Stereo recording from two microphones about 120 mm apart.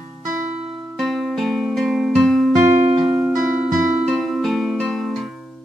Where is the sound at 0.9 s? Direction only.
Centre (ahead or behind).